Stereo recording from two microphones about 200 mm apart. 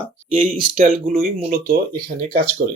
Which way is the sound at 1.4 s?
50° right (ahead or behind).